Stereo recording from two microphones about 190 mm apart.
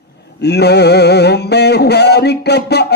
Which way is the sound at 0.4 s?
60° left (ahead or behind).